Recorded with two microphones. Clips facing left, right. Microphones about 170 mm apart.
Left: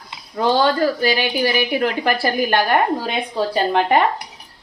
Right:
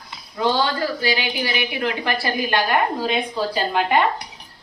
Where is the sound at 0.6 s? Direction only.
50° left (ahead or behind).